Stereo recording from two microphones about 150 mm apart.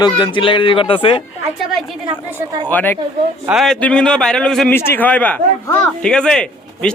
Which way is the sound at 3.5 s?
Centre (ahead or behind).